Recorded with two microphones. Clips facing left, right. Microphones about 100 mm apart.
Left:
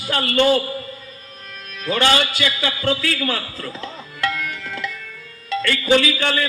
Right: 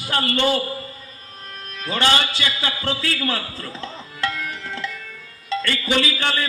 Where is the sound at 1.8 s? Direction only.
30° right (ahead or behind).